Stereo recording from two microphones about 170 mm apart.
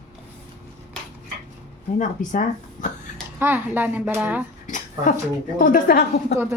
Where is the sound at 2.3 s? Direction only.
50° left (ahead or behind).